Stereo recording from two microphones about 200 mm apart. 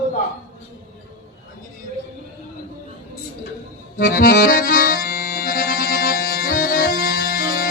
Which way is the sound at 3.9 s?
45° left (ahead or behind).